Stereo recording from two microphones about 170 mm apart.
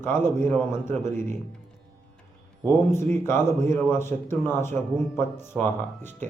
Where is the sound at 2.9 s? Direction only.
15° left (ahead or behind).